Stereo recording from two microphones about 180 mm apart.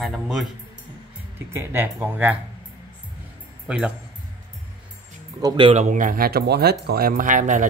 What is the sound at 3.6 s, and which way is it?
Speech, 5° right (ahead or behind).